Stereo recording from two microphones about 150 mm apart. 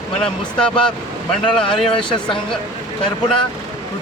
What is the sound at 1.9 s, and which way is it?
Speech, 35° left (ahead or behind).